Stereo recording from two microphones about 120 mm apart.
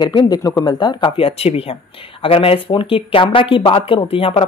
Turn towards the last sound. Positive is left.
turn(degrees=50)  # may be behind; listen again after turning